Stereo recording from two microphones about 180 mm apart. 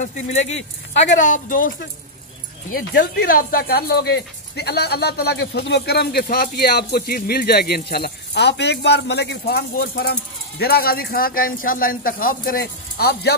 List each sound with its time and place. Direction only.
0.0 s a woman's voice: 40° left (ahead or behind); by 13.3 s 60° left (ahead or behind)